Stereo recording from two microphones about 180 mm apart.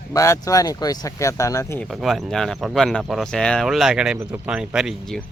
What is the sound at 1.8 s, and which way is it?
Speech, centre (ahead or behind).